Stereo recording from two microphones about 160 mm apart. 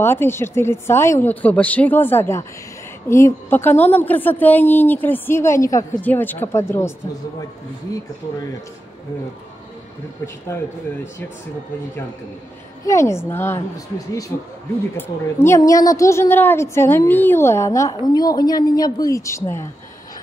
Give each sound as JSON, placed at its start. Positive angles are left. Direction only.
{"t": 0.0, "sound": "a woman's voice", "side_deg": 15}
{"t": 7.9, "sound": "a woman's voice", "side_deg": 20}
{"t": 12.8, "sound": "a woman's voice", "side_deg": 20}